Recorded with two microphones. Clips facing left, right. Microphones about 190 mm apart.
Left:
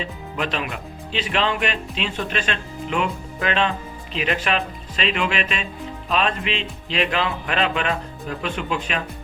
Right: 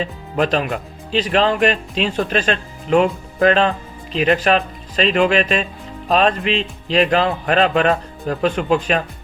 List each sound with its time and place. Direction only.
0.0 s speech: 40° right (ahead or behind)